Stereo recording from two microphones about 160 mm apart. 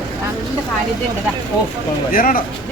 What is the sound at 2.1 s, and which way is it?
Speech, 60° left (ahead or behind).